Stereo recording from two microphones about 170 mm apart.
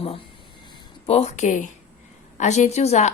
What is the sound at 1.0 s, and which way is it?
A woman's voice, 40° left (ahead or behind).